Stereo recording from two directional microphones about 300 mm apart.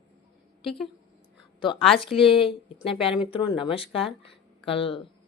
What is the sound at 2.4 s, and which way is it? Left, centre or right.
A woman's voice, centre.